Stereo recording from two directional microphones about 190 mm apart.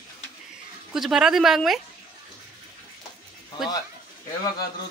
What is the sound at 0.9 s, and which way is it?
Speech, centre (ahead or behind).